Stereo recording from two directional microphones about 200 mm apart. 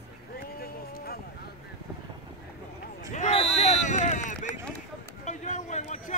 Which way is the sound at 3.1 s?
35° left (ahead or behind).